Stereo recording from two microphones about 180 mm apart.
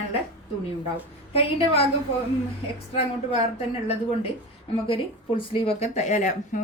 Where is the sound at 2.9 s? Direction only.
35° left (ahead or behind).